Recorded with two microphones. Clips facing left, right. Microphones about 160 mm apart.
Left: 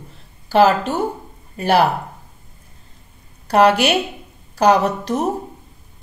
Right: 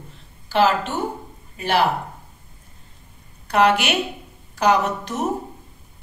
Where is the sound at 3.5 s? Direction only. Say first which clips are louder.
Left 4 dB; 35° left (ahead or behind).